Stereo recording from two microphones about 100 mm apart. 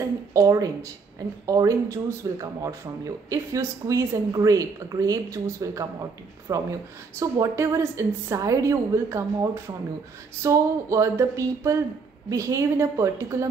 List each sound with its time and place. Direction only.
0.3 s a woman's voice: 35° right (ahead or behind)
7.2 s a woman's voice: 30° right (ahead or behind)